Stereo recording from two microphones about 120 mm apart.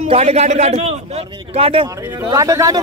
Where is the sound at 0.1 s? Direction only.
60° right (ahead or behind).